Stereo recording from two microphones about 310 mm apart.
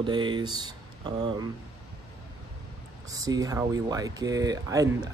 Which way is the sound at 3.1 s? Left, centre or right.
Centre.